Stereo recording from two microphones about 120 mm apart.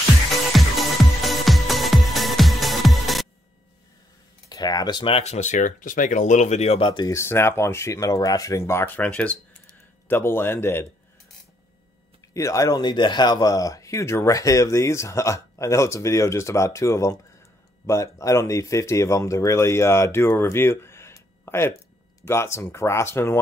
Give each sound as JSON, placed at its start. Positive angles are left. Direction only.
{"t": 0.5, "sound": "music", "side_deg": 0}
{"t": 4.5, "sound": "speech", "side_deg": 35}
{"t": 5.2, "sound": "speech", "side_deg": 75}
{"t": 7.1, "sound": "speech", "side_deg": 20}
{"t": 12.4, "sound": "speech", "side_deg": 25}